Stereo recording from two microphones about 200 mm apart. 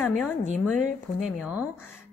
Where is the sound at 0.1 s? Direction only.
5° left (ahead or behind).